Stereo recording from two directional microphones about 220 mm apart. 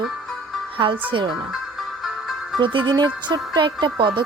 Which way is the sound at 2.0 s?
Centre (ahead or behind).